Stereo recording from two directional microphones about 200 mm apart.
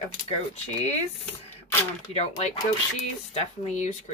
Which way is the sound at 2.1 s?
30° left (ahead or behind).